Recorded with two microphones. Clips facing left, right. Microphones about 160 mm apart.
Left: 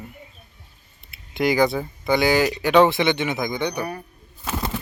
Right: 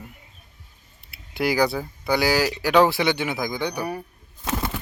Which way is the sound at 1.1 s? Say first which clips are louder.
Left 2 dB; 5° right (ahead or behind).